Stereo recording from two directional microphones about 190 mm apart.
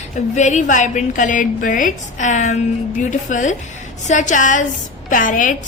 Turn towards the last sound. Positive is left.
turn(degrees=45)  # may be behind; listen again after turning